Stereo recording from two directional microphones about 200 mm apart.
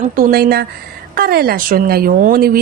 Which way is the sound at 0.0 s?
45° right (ahead or behind).